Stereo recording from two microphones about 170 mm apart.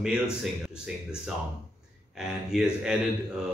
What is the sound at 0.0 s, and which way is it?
Speech, 5° right (ahead or behind).